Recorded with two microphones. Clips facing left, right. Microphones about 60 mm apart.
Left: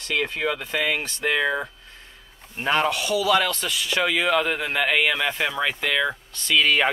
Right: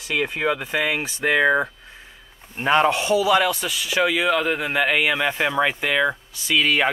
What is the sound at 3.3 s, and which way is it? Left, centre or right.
Speech, centre.